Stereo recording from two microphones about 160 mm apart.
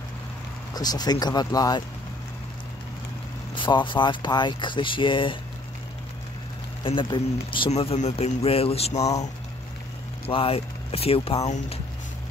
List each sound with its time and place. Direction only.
0.7 s speech: 25° left (ahead or behind)
3.5 s speech: 30° left (ahead or behind)
6.8 s a man's voice: 30° left (ahead or behind)
10.2 s a man's voice: 35° left (ahead or behind)